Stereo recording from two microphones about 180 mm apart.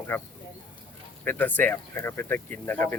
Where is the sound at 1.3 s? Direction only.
10° left (ahead or behind).